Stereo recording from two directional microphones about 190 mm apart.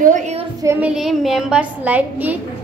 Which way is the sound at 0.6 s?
10° right (ahead or behind).